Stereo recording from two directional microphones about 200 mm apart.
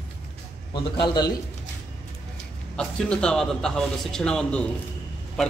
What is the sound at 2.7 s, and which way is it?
A man's voice, 5° left (ahead or behind).